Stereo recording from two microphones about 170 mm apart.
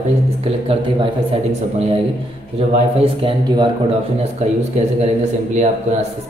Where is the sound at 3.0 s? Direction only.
30° right (ahead or behind).